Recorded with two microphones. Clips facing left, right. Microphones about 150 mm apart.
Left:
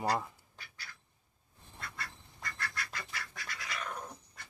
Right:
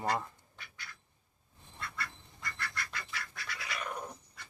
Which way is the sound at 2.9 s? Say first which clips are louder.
Even; 45° left (ahead or behind).